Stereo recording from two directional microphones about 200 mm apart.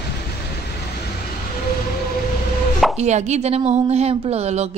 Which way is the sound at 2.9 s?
35° right (ahead or behind).